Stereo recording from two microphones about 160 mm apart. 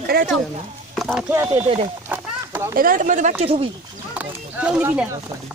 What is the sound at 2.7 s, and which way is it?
Speech, 60° right (ahead or behind).